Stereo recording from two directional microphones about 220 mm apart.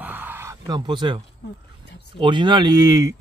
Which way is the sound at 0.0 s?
10° right (ahead or behind).